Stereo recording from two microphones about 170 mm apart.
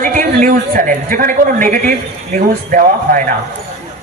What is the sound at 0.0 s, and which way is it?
A woman's voice, 50° right (ahead or behind).